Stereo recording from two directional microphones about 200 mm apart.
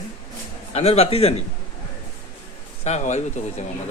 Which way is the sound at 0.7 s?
30° left (ahead or behind).